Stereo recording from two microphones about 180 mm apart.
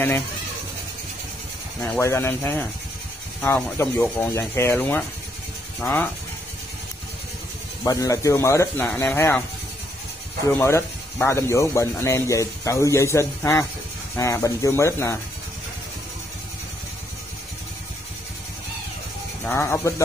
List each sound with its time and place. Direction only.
2.0 s speech: 15° left (ahead or behind)
7.8 s speech: 15° left (ahead or behind)
10.6 s speech: 15° left (ahead or behind)
19.4 s speech: 15° left (ahead or behind)